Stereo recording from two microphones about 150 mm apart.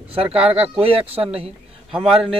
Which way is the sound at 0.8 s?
40° right (ahead or behind).